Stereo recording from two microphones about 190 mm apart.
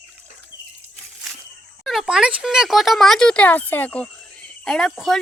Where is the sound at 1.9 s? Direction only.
Centre (ahead or behind).